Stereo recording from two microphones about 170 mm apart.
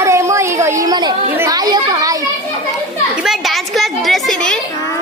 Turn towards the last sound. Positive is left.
turn(degrees=5)  # may be behind; listen again after turning